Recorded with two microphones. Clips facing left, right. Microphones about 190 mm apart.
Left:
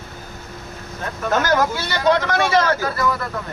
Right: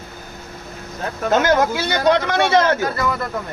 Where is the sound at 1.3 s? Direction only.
20° right (ahead or behind).